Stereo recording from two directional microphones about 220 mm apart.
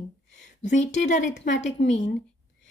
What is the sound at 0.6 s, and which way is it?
A woman's voice, 35° left (ahead or behind).